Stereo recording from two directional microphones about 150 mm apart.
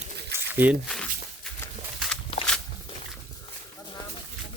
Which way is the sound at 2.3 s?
40° left (ahead or behind).